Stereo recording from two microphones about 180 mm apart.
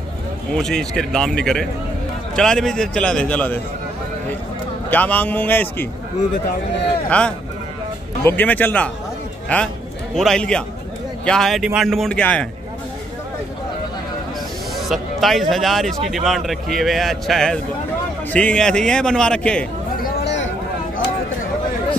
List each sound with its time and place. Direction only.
0.5 s speech: 5° left (ahead or behind)
4.8 s a man's voice: 10° left (ahead or behind)
7.1 s a man's voice: 5° left (ahead or behind)
14.8 s speech: centre (ahead or behind)
20.0 s a sound: 55° left (ahead or behind); by 20.5 s 80° left